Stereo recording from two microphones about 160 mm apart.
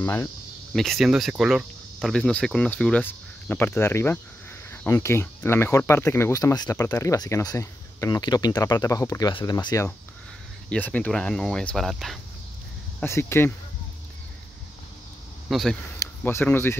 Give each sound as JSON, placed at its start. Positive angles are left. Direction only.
{"t": 0.0, "sound": "speech", "side_deg": 15}
{"t": 0.7, "sound": "speech", "side_deg": 0}
{"t": 10.7, "sound": "speech", "side_deg": 10}
{"t": 13.0, "sound": "speech", "side_deg": 15}
{"t": 15.5, "sound": "speech", "side_deg": 0}
{"t": 16.0, "sound": "speech", "side_deg": 15}